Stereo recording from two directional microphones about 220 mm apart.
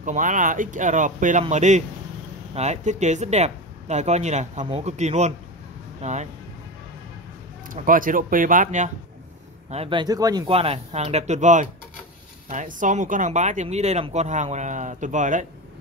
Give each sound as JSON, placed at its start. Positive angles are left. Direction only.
{"t": 0.0, "sound": "speech", "side_deg": -35}
{"t": 7.7, "sound": "speech", "side_deg": -40}